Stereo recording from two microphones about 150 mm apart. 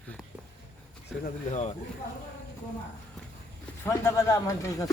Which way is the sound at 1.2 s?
50° left (ahead or behind).